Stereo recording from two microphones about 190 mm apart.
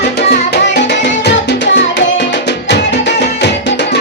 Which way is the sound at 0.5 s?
60° left (ahead or behind).